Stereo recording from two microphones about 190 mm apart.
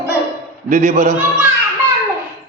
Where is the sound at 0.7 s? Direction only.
45° right (ahead or behind).